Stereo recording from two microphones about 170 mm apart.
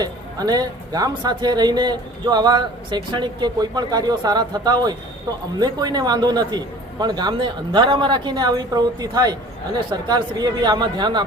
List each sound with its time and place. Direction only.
0.0 s speech: 25° right (ahead or behind)